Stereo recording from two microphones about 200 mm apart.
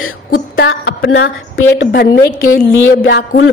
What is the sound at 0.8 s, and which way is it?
Speech, 75° left (ahead or behind).